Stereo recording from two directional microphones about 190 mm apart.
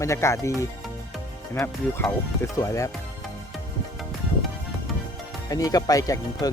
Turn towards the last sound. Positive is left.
turn(degrees=20)  # may be behind; listen again after turning